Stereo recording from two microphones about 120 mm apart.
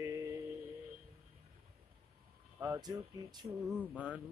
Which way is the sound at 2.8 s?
35° right (ahead or behind).